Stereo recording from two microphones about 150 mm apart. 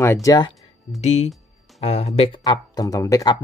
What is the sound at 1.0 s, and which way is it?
Speech, 50° left (ahead or behind).